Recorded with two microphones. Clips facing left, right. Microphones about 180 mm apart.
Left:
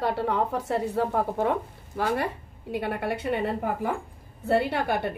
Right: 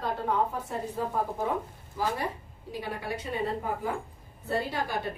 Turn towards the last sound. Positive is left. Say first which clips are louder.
# left 5 dB
turn(degrees=65)  # may be behind; listen again after turning